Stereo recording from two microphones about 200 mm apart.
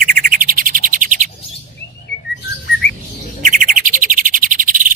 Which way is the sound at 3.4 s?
40° right (ahead or behind).